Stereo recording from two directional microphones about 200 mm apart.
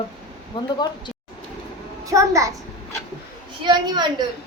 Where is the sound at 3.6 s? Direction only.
20° right (ahead or behind).